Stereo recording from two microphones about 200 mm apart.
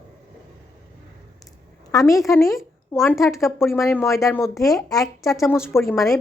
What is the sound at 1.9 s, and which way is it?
Speech, 15° left (ahead or behind).